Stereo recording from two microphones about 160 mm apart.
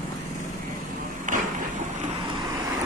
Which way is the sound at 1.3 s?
50° right (ahead or behind).